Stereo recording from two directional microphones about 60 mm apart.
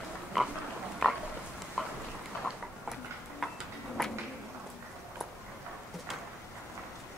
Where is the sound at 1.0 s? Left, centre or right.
Centre.